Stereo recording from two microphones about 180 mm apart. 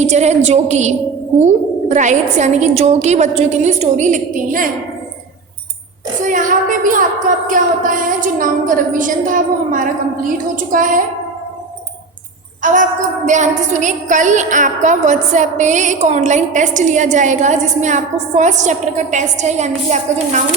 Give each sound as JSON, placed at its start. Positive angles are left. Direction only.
{"t": 0.0, "sound": "a woman's voice", "side_deg": -40}
{"t": 6.2, "sound": "a woman's voice", "side_deg": -45}
{"t": 12.6, "sound": "a woman's voice", "side_deg": -45}